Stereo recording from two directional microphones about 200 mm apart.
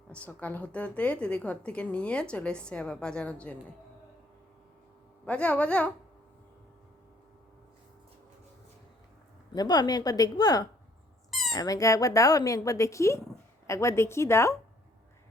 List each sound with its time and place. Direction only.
0.1 s a woman's voice: 10° left (ahead or behind)
5.2 s a woman's voice: 5° left (ahead or behind)
9.5 s speech: 20° left (ahead or behind)
11.3 s squeak: centre (ahead or behind)
11.5 s a woman's voice: 15° left (ahead or behind)